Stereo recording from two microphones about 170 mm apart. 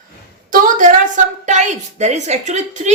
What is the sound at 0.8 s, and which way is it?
A woman's voice, 50° right (ahead or behind).